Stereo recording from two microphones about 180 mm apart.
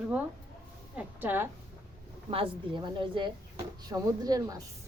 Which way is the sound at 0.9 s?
10° right (ahead or behind).